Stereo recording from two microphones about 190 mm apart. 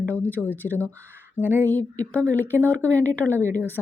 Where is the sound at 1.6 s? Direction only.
10° left (ahead or behind).